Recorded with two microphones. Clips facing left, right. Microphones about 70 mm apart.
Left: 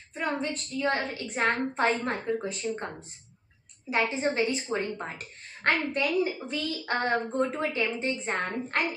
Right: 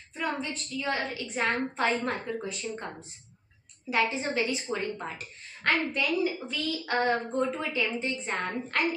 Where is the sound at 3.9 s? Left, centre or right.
Left.